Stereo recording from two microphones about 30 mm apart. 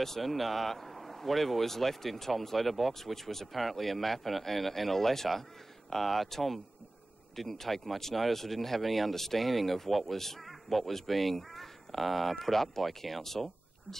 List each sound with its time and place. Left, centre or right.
0.0 s speech: centre